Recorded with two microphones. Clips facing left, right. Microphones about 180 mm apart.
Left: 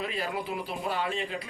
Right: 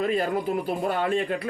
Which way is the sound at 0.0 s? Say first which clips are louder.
Right 8 dB; 50° right (ahead or behind).